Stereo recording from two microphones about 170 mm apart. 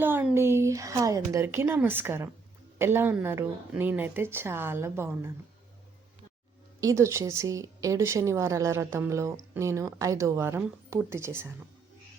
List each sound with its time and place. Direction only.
0.0 s speech: 10° right (ahead or behind)
6.7 s speech: 20° right (ahead or behind)